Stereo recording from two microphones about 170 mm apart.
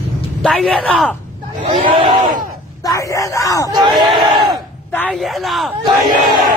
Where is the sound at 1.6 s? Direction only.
30° right (ahead or behind).